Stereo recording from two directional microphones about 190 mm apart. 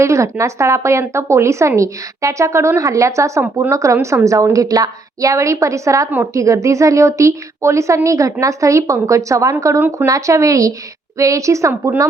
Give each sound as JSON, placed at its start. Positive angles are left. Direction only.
{"t": 0.0, "sound": "speech", "side_deg": -15}